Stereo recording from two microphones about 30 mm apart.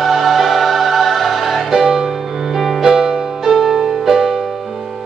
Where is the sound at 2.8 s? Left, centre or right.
Centre.